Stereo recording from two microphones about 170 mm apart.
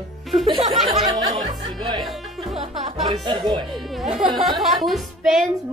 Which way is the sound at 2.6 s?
40° right (ahead or behind).